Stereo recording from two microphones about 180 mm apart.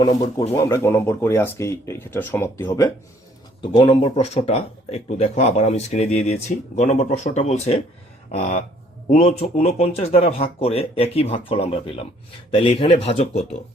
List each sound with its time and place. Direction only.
0.5 s speech: 15° left (ahead or behind)
3.6 s speech: 30° left (ahead or behind)